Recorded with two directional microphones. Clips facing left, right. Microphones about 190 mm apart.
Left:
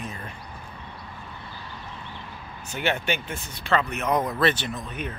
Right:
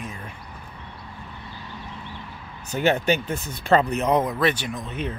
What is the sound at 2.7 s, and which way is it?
Speech, 40° right (ahead or behind).